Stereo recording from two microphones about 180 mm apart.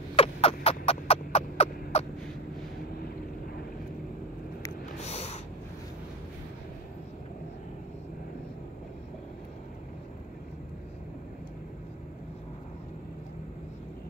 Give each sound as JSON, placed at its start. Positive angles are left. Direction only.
{"t": 0.1, "sound": "rodents", "side_deg": 30}
{"t": 5.0, "sound": "snort", "side_deg": 35}